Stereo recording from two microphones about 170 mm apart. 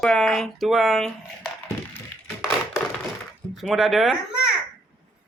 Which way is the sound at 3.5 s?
Centre (ahead or behind).